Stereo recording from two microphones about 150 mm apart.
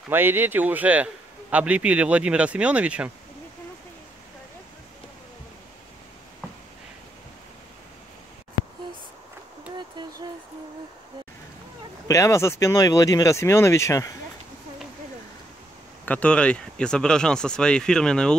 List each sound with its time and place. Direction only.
0.1 s a man's voice: 15° right (ahead or behind)
10.0 s a sound: 30° right (ahead or behind)
12.1 s speech: 20° left (ahead or behind)
16.1 s speech: 10° left (ahead or behind)